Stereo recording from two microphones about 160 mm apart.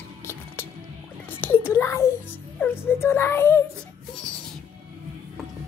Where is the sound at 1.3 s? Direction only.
15° left (ahead or behind).